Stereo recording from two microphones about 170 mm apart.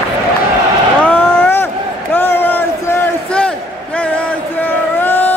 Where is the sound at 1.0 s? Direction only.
10° left (ahead or behind).